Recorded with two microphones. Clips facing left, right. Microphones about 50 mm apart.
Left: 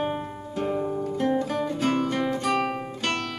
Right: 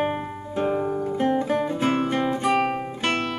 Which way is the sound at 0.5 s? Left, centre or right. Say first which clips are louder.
Right 3 dB; right.